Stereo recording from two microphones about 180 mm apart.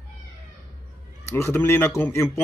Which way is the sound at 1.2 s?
15° left (ahead or behind).